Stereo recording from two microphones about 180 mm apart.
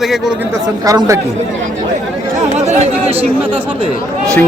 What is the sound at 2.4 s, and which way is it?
Speech, 40° right (ahead or behind).